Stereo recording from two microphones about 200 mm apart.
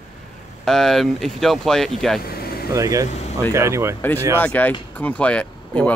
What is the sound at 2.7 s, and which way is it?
Speech, 15° right (ahead or behind).